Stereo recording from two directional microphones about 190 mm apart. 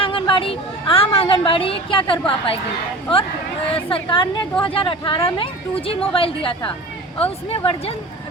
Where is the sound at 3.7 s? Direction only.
25° left (ahead or behind).